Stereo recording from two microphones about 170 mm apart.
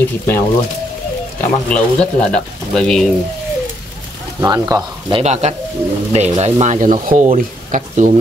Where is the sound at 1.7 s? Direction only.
5° left (ahead or behind).